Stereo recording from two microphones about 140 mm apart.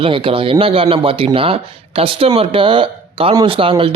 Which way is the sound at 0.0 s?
40° right (ahead or behind).